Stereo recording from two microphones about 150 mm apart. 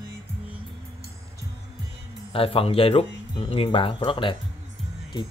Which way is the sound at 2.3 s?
40° left (ahead or behind).